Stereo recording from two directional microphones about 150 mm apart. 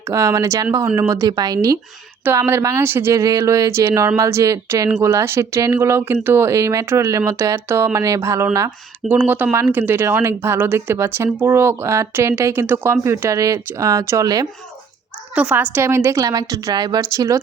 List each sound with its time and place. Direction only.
0.1 s a woman's voice: 20° right (ahead or behind)
15.4 s a woman's voice: 10° right (ahead or behind)